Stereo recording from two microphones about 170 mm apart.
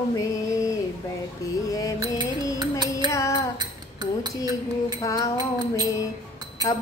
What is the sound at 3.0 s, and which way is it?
Music, 20° left (ahead or behind).